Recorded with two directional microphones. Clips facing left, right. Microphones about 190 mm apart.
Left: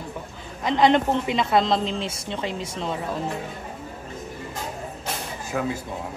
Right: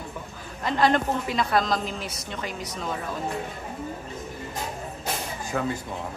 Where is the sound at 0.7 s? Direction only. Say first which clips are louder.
Left 4 dB; 20° left (ahead or behind).